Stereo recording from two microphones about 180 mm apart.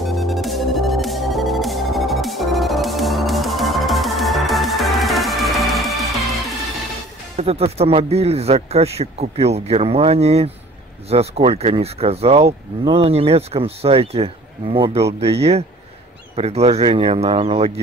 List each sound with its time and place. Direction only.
0.0 s music: centre (ahead or behind)
7.3 s speech: 35° right (ahead or behind)